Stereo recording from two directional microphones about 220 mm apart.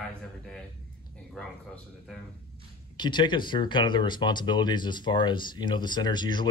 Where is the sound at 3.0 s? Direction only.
20° left (ahead or behind).